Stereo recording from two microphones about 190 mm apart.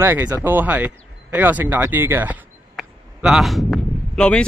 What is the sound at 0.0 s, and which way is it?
Speech, 10° right (ahead or behind).